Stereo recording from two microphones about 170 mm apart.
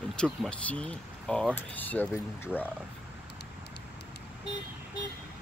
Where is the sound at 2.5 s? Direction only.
5° right (ahead or behind).